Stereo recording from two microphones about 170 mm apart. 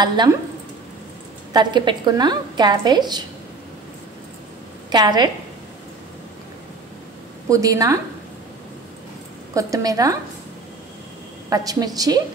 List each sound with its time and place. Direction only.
0.0 s a woman's voice: 25° right (ahead or behind)
1.5 s a woman's voice: 25° right (ahead or behind)
4.8 s a woman's voice: 25° right (ahead or behind)
7.4 s a woman's voice: 20° right (ahead or behind)
9.5 s a woman's voice: 20° right (ahead or behind)
11.4 s a woman's voice: 20° right (ahead or behind)